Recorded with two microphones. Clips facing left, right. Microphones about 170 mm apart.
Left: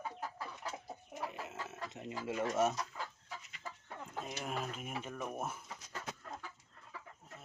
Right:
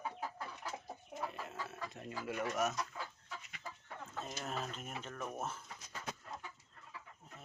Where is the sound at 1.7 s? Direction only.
20° left (ahead or behind).